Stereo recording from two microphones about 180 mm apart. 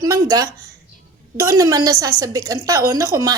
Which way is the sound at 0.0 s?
20° right (ahead or behind).